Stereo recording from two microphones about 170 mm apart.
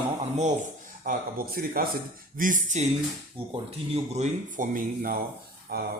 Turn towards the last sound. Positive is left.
turn(degrees=-65)  # may be behind; listen again after turning